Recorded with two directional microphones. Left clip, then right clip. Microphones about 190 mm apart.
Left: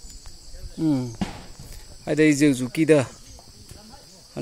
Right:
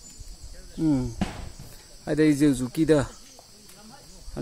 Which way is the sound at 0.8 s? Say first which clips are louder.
Left 1 dB; 5° left (ahead or behind).